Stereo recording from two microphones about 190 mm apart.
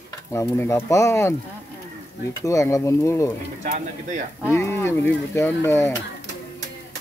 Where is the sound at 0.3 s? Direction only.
15° left (ahead or behind).